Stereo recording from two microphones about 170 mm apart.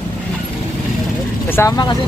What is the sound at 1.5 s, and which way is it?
Speech, 15° left (ahead or behind).